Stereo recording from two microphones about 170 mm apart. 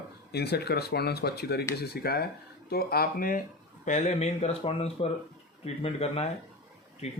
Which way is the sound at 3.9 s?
45° left (ahead or behind).